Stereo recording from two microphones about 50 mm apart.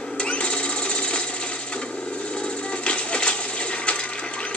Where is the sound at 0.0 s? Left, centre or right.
Left.